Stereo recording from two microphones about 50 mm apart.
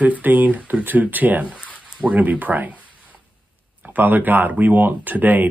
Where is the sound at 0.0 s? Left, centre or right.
Right.